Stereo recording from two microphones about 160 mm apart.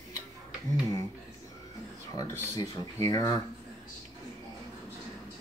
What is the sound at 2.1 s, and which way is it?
Speech, 25° left (ahead or behind).